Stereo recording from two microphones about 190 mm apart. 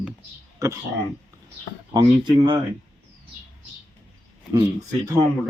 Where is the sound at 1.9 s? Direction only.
25° right (ahead or behind).